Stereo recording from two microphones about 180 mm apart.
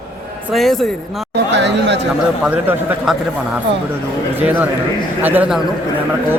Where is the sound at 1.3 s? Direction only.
80° right.